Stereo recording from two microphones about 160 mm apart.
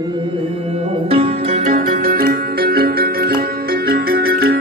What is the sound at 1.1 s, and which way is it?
Music, 40° right (ahead or behind).